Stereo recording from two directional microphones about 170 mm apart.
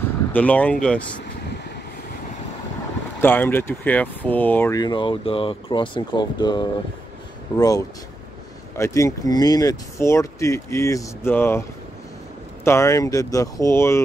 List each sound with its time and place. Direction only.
0.3 s speech: 10° left (ahead or behind)
3.2 s speech: 10° left (ahead or behind)
12.6 s speech: 15° left (ahead or behind)